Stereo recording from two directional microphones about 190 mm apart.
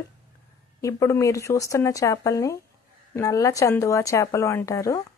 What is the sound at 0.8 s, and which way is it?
Speech, 15° left (ahead or behind).